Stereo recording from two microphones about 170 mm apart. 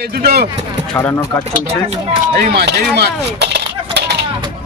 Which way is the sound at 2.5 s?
75° right (ahead or behind).